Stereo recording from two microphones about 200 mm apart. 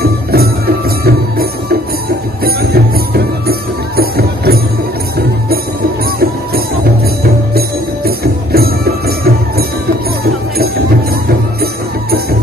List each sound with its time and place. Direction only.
0.3 s music: 50° right (ahead or behind)
7.2 s music: 50° right (ahead or behind)
11.6 s music: 50° right (ahead or behind)